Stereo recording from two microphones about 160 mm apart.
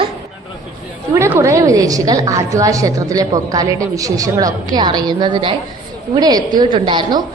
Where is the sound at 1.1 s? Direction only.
15° right (ahead or behind).